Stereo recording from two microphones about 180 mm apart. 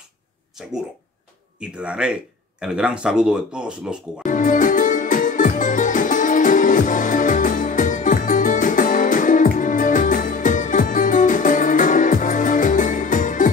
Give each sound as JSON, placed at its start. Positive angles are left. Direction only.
{"t": 0.6, "sound": "speech", "side_deg": 0}
{"t": 4.2, "sound": "music", "side_deg": 45}